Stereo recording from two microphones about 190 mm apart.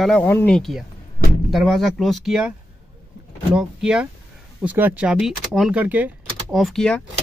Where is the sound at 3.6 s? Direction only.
5° right (ahead or behind).